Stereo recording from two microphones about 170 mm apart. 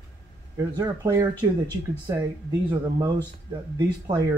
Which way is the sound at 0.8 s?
20° right (ahead or behind).